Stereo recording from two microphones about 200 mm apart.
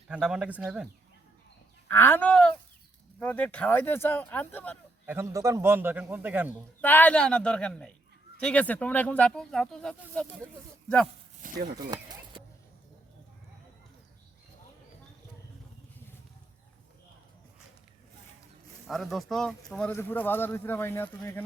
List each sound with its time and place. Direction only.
0.1 s speech: 5° right (ahead or behind)
1.9 s speech: 10° left (ahead or behind)
5.0 s a man's voice: 10° right (ahead or behind)
6.8 s speech: 10° left (ahead or behind)
11.4 s speech: 35° right (ahead or behind)
11.8 s a sound: 20° right (ahead or behind)
18.9 s speech: centre (ahead or behind)